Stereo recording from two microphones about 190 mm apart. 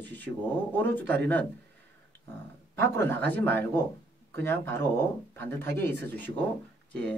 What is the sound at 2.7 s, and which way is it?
Speech, 10° left (ahead or behind).